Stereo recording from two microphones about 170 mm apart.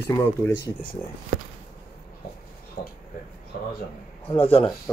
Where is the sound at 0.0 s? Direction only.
15° left (ahead or behind).